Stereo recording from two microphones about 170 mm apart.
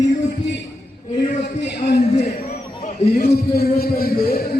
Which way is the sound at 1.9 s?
45° left (ahead or behind).